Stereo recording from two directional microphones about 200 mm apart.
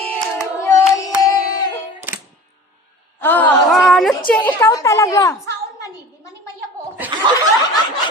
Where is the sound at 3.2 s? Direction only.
10° left (ahead or behind).